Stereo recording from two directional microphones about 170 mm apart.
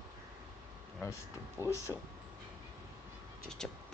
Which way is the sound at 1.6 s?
15° left (ahead or behind).